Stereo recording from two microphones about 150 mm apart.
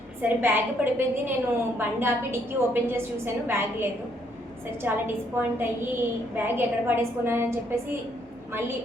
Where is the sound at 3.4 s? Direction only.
15° right (ahead or behind).